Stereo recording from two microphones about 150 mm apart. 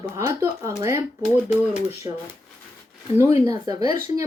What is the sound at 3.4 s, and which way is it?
Speech, 20° right (ahead or behind).